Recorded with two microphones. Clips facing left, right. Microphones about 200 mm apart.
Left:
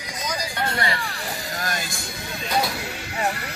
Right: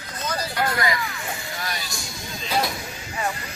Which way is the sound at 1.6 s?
50° left (ahead or behind).